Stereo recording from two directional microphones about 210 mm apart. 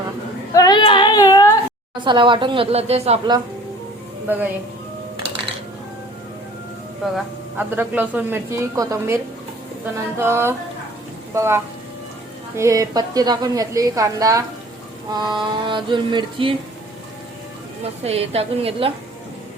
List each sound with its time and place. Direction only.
0.5 s female singing: 20° left (ahead or behind)
2.0 s mantra: 25° right (ahead or behind)
7.0 s a woman's voice: 5° right (ahead or behind)
15.1 s mantra: 20° right (ahead or behind)
18.0 s mantra: 30° right (ahead or behind)